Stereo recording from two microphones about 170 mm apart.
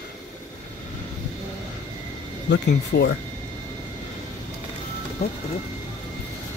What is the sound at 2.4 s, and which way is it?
Speech, 90° left.